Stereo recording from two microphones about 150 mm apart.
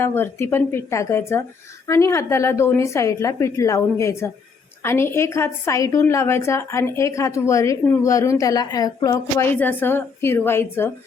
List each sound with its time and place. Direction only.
0.0 s a woman's voice: 15° left (ahead or behind)
9.6 s speech: 15° left (ahead or behind)